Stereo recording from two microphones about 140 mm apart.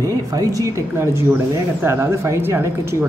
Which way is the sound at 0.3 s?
25° right (ahead or behind).